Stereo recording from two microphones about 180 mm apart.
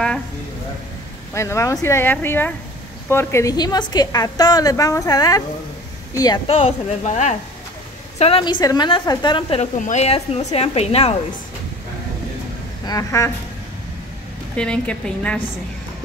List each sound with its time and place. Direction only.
1.3 s a woman's voice: 15° left (ahead or behind)
9.8 s a woman's voice: 40° left (ahead or behind)
12.8 s a woman's voice: 20° left (ahead or behind)
14.5 s speech: 5° left (ahead or behind)